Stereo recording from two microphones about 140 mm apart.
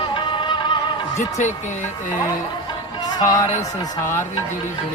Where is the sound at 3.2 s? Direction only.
25° left (ahead or behind).